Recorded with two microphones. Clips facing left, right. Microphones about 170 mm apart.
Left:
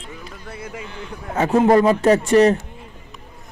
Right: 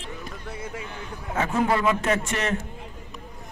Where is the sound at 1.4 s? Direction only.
40° left (ahead or behind).